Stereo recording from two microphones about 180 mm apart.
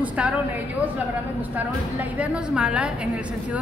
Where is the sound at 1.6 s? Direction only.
10° right (ahead or behind).